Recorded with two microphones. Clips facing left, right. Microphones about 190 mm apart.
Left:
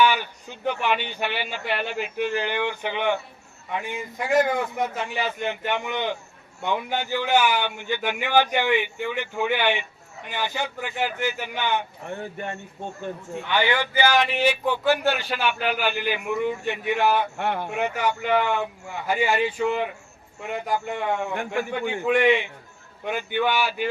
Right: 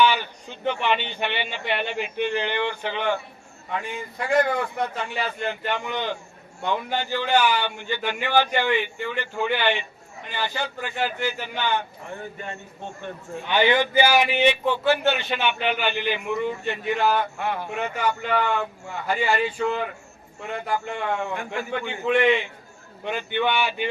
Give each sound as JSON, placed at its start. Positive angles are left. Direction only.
{"t": 0.0, "sound": "speech", "side_deg": 10}
{"t": 13.5, "sound": "speech", "side_deg": -20}
{"t": 14.3, "sound": "speech", "side_deg": 5}
{"t": 17.3, "sound": "speech", "side_deg": 60}
{"t": 18.0, "sound": "speech", "side_deg": 15}